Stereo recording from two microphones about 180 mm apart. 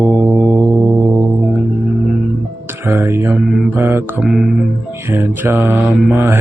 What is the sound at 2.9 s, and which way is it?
Mantra, 15° right (ahead or behind).